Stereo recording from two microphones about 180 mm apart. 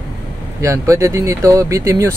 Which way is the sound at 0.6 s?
15° right (ahead or behind).